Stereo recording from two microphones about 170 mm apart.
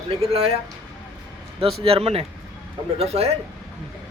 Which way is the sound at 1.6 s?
35° right (ahead or behind).